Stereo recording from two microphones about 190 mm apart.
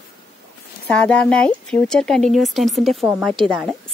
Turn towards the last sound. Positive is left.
turn(degrees=5)  # may be behind; listen again after turning